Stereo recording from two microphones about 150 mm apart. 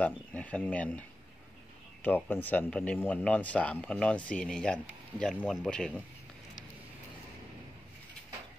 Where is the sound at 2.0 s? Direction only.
15° left (ahead or behind).